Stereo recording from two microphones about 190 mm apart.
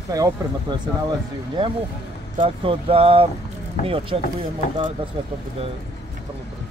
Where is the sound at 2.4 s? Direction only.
30° right (ahead or behind).